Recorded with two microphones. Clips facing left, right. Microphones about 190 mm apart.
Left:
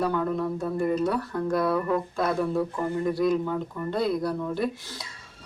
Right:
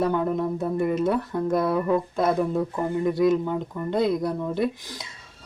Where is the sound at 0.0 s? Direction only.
20° right (ahead or behind).